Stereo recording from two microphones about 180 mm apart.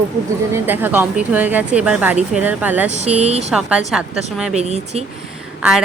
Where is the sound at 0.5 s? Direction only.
10° right (ahead or behind).